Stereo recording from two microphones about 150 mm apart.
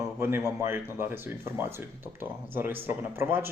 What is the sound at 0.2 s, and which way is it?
Speech, 15° right (ahead or behind).